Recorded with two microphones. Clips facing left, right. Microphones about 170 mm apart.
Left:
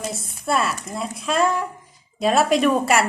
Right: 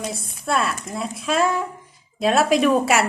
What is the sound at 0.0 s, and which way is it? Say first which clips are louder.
Speech: even; centre (ahead or behind).